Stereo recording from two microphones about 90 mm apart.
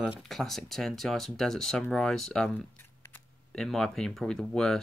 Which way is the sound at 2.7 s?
25° left (ahead or behind).